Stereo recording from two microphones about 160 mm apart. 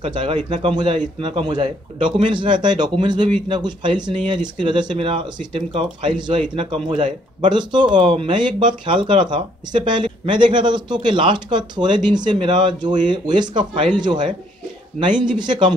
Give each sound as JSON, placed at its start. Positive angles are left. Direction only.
{"t": 0.0, "sound": "speech", "side_deg": -30}